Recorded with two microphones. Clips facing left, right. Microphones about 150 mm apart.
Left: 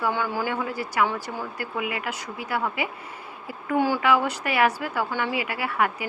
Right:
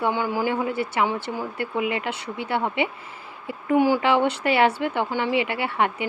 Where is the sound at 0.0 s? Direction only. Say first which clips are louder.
Right 3 dB; 15° right (ahead or behind).